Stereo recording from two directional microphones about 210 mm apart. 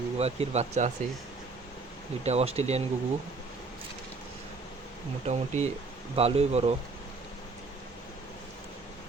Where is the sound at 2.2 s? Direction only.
30° right (ahead or behind).